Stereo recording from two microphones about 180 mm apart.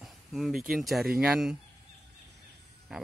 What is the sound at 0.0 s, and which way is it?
Speech, centre (ahead or behind).